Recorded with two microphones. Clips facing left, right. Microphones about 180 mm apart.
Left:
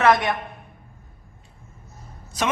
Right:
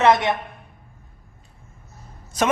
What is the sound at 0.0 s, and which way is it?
Speech, 20° right (ahead or behind).